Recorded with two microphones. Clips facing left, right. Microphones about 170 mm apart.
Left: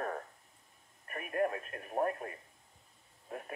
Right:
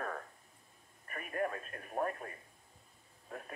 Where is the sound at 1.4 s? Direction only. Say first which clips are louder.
Left 4 dB; 25° left (ahead or behind).